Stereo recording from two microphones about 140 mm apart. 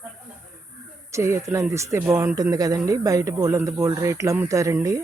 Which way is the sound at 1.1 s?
20° right (ahead or behind).